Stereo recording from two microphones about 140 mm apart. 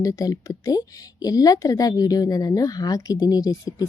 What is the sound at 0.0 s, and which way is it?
A woman's voice, 25° left (ahead or behind).